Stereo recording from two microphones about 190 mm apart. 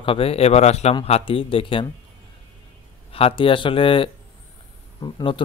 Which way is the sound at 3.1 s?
30° left (ahead or behind).